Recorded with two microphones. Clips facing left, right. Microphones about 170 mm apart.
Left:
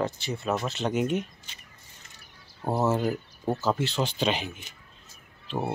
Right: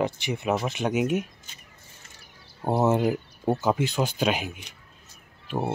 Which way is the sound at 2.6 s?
20° right (ahead or behind).